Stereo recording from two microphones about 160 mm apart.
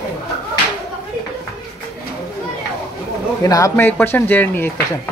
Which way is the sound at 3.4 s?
20° left (ahead or behind).